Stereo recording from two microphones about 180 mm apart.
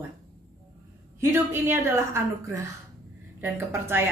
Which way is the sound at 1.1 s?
15° right (ahead or behind).